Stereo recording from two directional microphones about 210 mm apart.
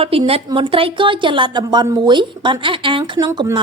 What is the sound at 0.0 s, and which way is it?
A woman's voice, 25° right (ahead or behind).